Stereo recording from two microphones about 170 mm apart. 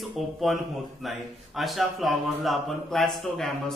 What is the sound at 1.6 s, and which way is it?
Speech, centre (ahead or behind).